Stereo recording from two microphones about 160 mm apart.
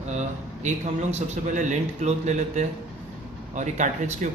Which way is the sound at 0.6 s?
45° right (ahead or behind).